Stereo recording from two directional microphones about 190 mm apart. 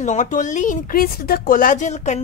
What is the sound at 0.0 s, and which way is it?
Speech, 40° left (ahead or behind).